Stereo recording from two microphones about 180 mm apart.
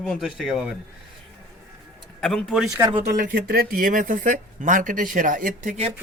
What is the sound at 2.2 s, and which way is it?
Speech, centre (ahead or behind).